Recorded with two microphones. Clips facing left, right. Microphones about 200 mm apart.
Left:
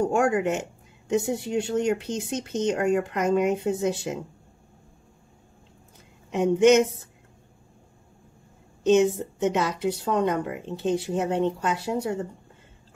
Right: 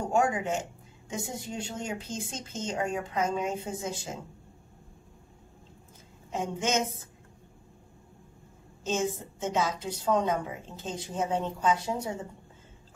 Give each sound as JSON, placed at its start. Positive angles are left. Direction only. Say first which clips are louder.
{"t": 0.0, "sound": "speech", "louder": "left 5 dB", "side_deg": 70}
{"t": 6.3, "sound": "a woman's voice", "louder": "left 12 dB", "side_deg": 65}
{"t": 8.8, "sound": "a woman's voice", "louder": "left 11 dB", "side_deg": 65}